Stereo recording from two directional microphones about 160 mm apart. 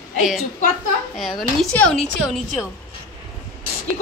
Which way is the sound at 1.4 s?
5° left (ahead or behind).